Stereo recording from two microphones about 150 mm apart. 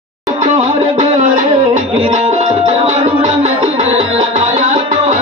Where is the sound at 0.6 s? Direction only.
45° right (ahead or behind).